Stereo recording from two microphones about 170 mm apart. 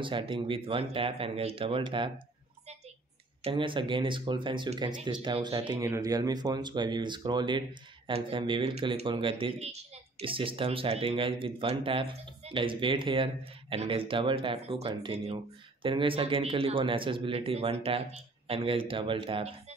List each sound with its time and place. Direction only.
0.0 s speech: 30° right (ahead or behind)
3.4 s speech: 30° right (ahead or behind)